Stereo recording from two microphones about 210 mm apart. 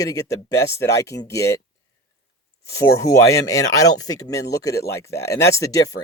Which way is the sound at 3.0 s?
15° left (ahead or behind).